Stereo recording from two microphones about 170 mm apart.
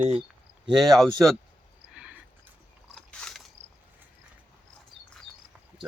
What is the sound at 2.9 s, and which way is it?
Biting, 5° left (ahead or behind).